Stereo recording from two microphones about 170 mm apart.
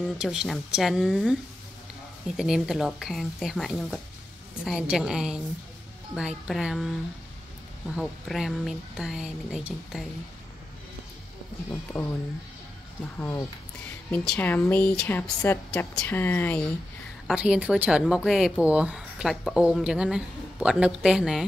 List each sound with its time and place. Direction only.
0.2 s speech: 5° right (ahead or behind)
2.3 s speech: 5° right (ahead or behind)
7.9 s speech: centre (ahead or behind)
11.9 s speech: 20° left (ahead or behind)
13.2 s a woman's voice: 15° left (ahead or behind)
17.3 s speech: 5° right (ahead or behind)